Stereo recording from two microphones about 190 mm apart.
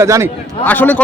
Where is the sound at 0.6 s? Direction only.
10° left (ahead or behind).